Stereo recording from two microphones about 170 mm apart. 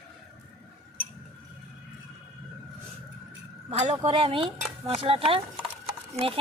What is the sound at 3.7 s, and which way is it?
Speech, 40° right (ahead or behind).